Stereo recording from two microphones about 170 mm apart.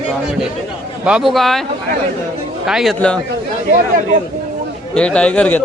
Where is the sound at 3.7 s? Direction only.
50° right (ahead or behind).